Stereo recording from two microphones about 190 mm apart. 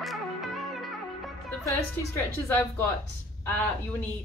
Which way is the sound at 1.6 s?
15° left (ahead or behind).